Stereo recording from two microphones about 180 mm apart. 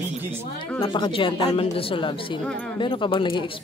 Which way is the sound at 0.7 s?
25° left (ahead or behind).